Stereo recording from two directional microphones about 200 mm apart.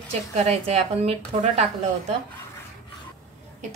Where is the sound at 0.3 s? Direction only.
30° right (ahead or behind).